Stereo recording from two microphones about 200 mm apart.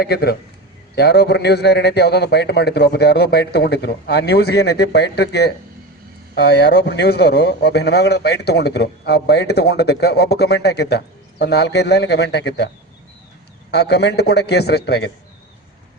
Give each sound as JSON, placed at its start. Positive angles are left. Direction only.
{"t": 0.0, "sound": "a man's voice", "side_deg": 55}